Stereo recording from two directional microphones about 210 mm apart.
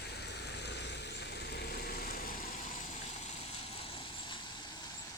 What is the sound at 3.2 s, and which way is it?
Vehicle, 25° left (ahead or behind).